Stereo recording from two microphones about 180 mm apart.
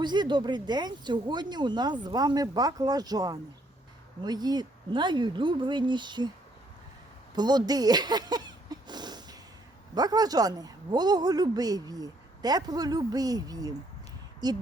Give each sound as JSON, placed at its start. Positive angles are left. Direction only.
{"t": 0.0, "sound": "speech", "side_deg": -25}
{"t": 7.3, "sound": "a sound", "side_deg": -25}
{"t": 9.9, "sound": "speech", "side_deg": -20}